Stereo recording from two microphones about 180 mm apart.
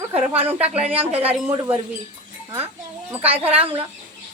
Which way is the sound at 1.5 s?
10° right (ahead or behind).